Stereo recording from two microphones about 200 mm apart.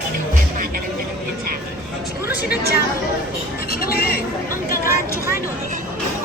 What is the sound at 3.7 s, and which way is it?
Music, 50° left (ahead or behind).